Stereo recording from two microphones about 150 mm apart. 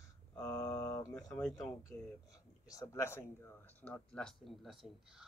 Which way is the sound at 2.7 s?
20° left (ahead or behind).